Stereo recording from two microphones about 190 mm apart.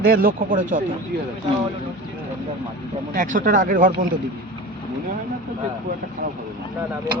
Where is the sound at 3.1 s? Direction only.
45° right (ahead or behind).